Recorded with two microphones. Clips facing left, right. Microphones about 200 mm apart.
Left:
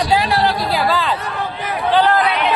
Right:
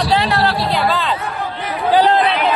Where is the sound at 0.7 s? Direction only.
5° left (ahead or behind).